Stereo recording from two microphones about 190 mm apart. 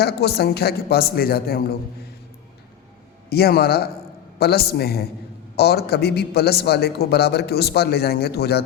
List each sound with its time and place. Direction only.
0.0 s a man's voice: 55° left (ahead or behind)
3.2 s a man's voice: 55° left (ahead or behind)